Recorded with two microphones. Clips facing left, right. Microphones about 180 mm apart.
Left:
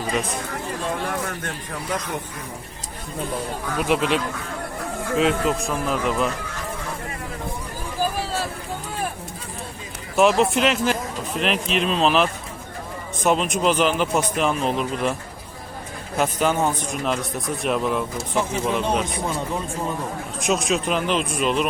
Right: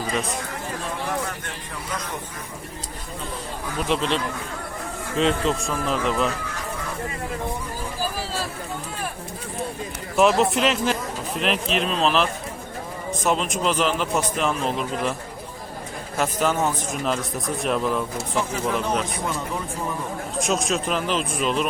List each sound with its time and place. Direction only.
3.8 s speech: 10° left (ahead or behind)
10.2 s speech: centre (ahead or behind)
16.1 s speech: centre (ahead or behind)
18.3 s speech: 25° left (ahead or behind)
20.4 s speech: centre (ahead or behind)